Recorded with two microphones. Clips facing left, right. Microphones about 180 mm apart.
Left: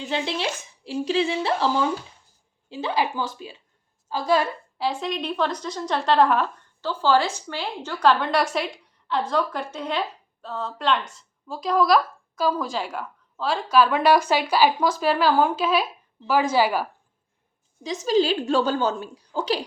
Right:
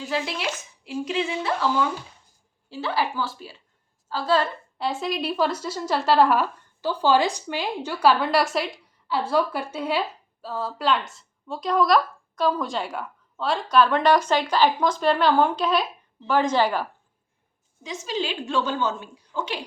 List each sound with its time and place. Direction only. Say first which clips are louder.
0.1 s a woman's voice: left 1 dB; 25° left (ahead or behind)
2.6 s a woman's voice: left 1 dB; 20° left (ahead or behind)
4.8 s a woman's voice: even; centre (ahead or behind)
17.8 s a woman's voice: left 8 dB; 40° left (ahead or behind)